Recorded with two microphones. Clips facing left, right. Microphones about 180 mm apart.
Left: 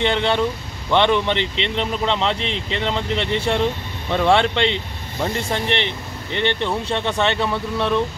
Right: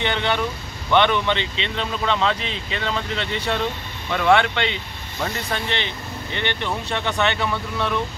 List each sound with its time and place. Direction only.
0.0 s speech: 25° left (ahead or behind)